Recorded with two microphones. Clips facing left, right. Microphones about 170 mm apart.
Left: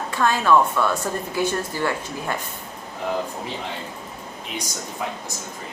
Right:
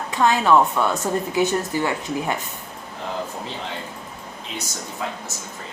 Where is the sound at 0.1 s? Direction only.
20° right (ahead or behind).